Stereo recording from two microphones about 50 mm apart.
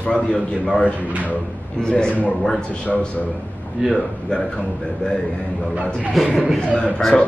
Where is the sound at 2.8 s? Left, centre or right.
Left.